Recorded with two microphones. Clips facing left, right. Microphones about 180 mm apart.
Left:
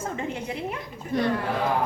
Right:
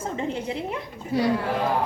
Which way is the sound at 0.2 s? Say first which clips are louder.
Right 2 dB; 30° right (ahead or behind).